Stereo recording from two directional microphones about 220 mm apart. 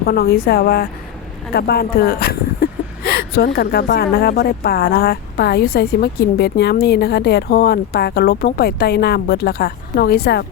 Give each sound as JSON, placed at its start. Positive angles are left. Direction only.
{"t": 0.0, "sound": "speech", "side_deg": 45}